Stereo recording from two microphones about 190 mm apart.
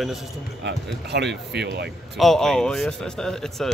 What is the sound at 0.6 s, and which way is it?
Speech, 65° right (ahead or behind).